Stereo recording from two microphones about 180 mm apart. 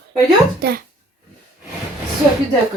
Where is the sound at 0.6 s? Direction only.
60° right (ahead or behind).